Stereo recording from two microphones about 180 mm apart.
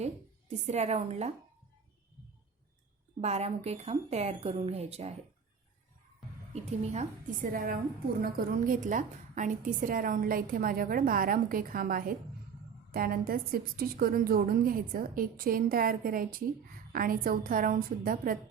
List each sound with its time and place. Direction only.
0.0 s a woman's voice: 35° right (ahead or behind)
3.2 s speech: 35° right (ahead or behind)
6.5 s a woman's voice: 40° right (ahead or behind)